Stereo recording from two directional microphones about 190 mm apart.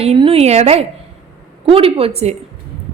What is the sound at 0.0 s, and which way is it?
A woman's voice, 30° right (ahead or behind).